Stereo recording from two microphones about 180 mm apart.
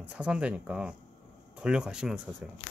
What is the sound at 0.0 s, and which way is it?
Speech, 5° right (ahead or behind).